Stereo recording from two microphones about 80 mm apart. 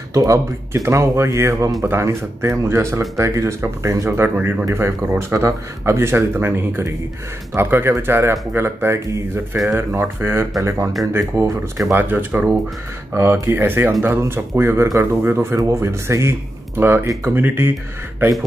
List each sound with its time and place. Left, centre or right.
0.1 s speech: right
0.8 s speech: right
4.4 s speech: right
5.3 s speech: right
12.0 s speech: right